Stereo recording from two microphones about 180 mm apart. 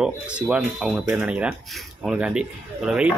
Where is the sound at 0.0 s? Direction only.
5° right (ahead or behind).